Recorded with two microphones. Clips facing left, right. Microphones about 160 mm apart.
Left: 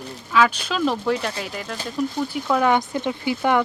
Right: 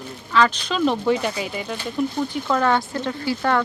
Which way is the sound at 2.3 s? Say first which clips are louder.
Left 3 dB; 10° left (ahead or behind).